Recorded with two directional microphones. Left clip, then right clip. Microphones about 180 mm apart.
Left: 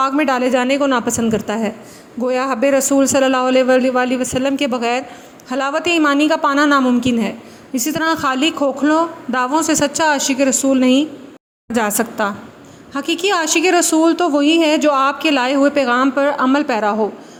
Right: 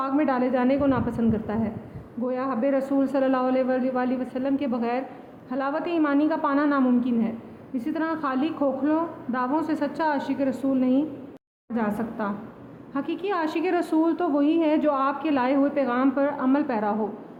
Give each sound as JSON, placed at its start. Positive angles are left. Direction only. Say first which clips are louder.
{"t": 0.0, "sound": "a woman's voice", "louder": "left 8 dB", "side_deg": 40}
{"t": 12.9, "sound": "a woman's voice", "louder": "left 10 dB", "side_deg": 35}